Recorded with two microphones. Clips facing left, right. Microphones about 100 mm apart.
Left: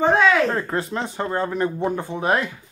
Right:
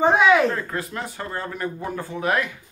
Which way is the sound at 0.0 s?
15° right (ahead or behind).